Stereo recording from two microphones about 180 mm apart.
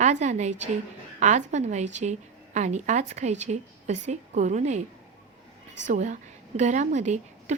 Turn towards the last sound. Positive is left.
turn(degrees=-40)  # may be behind; listen again after turning